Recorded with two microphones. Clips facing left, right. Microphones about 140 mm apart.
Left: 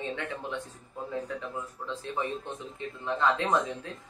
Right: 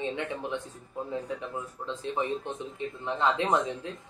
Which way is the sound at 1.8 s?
20° right (ahead or behind).